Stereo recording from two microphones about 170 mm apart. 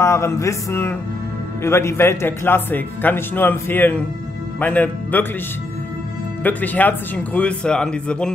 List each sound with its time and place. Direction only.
0.0 s speech: 15° left (ahead or behind)
6.4 s speech: 10° left (ahead or behind)